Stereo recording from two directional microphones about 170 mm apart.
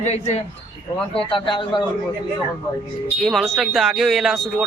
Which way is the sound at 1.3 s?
30° left (ahead or behind).